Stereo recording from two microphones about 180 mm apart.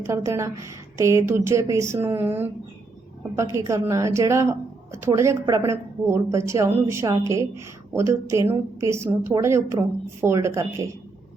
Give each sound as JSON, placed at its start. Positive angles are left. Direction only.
{"t": 0.1, "sound": "speech", "side_deg": -15}